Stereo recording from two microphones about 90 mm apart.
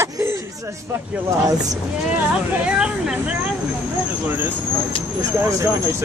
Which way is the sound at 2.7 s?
10° right (ahead or behind).